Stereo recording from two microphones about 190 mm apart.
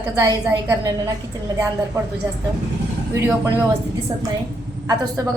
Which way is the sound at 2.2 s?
15° right (ahead or behind).